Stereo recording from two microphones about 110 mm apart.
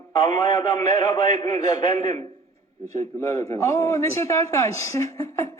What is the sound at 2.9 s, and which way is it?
A man's voice, 25° left (ahead or behind).